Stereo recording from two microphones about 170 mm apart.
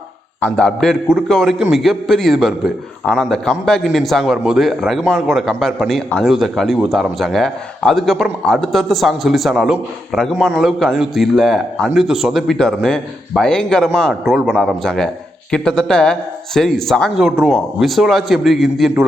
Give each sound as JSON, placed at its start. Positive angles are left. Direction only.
{"t": 0.3, "sound": "a man's voice", "side_deg": 10}